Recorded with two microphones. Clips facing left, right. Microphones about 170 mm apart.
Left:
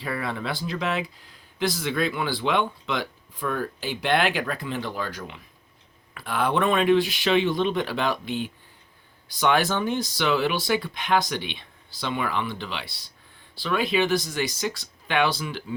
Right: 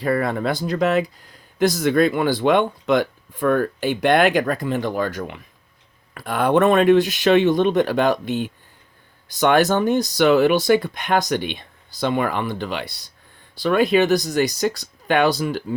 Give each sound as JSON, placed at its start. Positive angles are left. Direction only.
{"t": 0.0, "sound": "speech", "side_deg": -45}
{"t": 6.1, "sound": "speech", "side_deg": -45}